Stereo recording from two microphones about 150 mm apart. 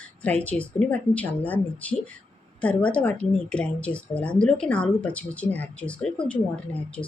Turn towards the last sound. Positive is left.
turn(degrees=10)  # may be behind; listen again after turning